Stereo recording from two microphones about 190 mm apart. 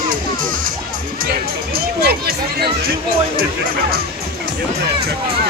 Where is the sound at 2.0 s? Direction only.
55° right (ahead or behind).